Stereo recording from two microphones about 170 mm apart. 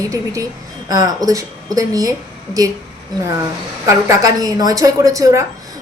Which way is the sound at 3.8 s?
20° right (ahead or behind).